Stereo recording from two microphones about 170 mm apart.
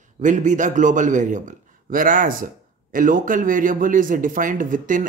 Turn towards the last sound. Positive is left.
turn(degrees=-50)  # may be behind; listen again after turning